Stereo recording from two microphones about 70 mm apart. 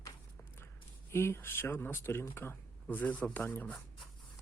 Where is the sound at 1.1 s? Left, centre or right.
Left.